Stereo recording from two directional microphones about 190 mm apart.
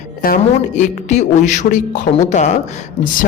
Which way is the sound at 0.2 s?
45° left (ahead or behind).